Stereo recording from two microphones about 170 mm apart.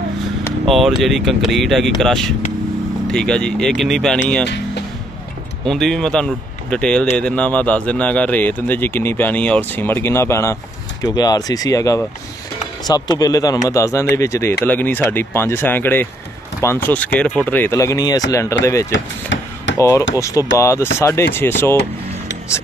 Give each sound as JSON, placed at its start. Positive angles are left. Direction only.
{"t": 0.7, "sound": "speech", "side_deg": 0}
{"t": 5.7, "sound": "speech", "side_deg": 0}
{"t": 19.2, "sound": "a sound", "side_deg": 90}
{"t": 19.8, "sound": "speech", "side_deg": 15}